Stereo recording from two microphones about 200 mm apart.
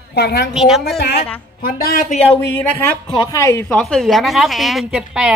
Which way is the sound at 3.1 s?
15° left (ahead or behind).